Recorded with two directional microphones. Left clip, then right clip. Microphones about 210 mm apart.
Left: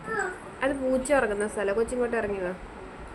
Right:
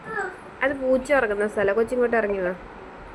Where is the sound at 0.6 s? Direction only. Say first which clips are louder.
Right 4 dB; 15° right (ahead or behind).